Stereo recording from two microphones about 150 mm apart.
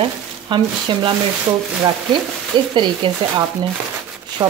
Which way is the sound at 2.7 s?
30° right (ahead or behind).